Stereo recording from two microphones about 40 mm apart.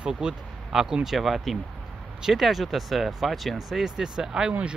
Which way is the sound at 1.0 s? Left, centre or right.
Centre.